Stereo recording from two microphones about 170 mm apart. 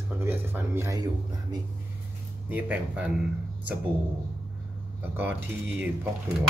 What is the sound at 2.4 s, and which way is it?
Speech, 10° right (ahead or behind).